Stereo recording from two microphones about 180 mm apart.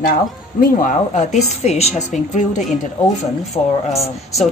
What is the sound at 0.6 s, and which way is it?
A woman's voice, 45° left (ahead or behind).